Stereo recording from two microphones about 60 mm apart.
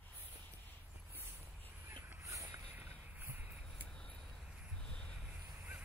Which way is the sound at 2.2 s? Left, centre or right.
Right.